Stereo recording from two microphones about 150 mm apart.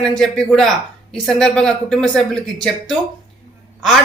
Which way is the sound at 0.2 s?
5° left (ahead or behind).